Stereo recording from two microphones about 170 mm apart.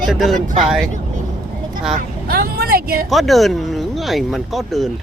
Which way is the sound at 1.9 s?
60° right (ahead or behind).